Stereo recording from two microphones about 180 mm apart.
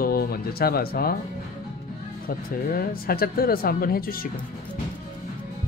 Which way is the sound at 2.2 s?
55° left (ahead or behind).